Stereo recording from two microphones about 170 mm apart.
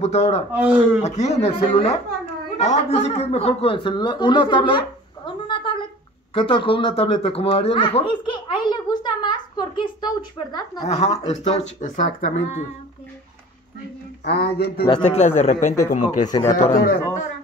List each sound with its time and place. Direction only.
0.0 s speech: 40° left (ahead or behind)
0.5 s speech: 10° right (ahead or behind)
1.0 s a man's voice: 40° left (ahead or behind); by 10.9 s 25° left (ahead or behind)
10.9 s speech: 40° left (ahead or behind)
11.8 s speech: 50° left (ahead or behind)
14.2 s speech: 70° left (ahead or behind)
15.0 s speech: 45° left (ahead or behind)
16.3 s speech: 25° left (ahead or behind)